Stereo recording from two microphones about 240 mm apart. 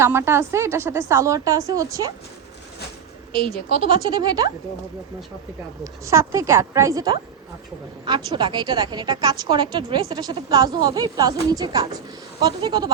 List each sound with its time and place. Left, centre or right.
0.0 s a woman's voice: centre
3.4 s speech: right
5.8 s a woman's voice: centre